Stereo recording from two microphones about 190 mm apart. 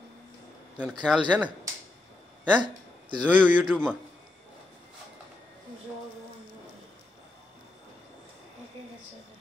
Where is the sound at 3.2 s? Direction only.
10° right (ahead or behind).